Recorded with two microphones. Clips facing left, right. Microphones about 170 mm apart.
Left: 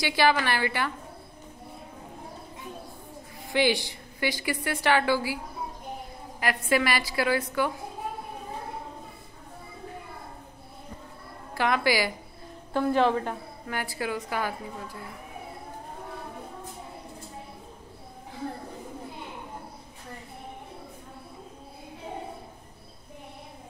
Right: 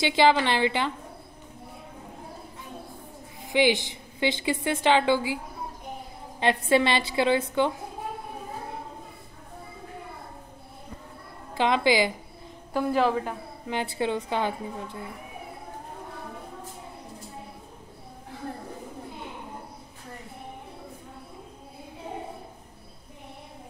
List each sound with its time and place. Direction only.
0.0 s a woman's voice: 20° right (ahead or behind)
3.4 s a woman's voice: 15° right (ahead or behind)
6.4 s a woman's voice: 25° right (ahead or behind)
11.5 s a woman's voice: 20° right (ahead or behind)
12.7 s a woman's voice: 5° right (ahead or behind)
13.7 s a woman's voice: 20° right (ahead or behind)